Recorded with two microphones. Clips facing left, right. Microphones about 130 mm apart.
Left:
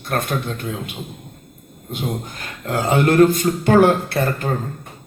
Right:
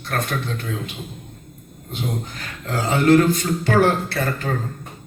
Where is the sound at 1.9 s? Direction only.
50° left (ahead or behind).